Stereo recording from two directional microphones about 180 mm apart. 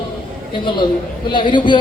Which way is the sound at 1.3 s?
25° left (ahead or behind).